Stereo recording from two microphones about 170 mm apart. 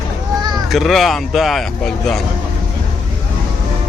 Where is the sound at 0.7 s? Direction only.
Centre (ahead or behind).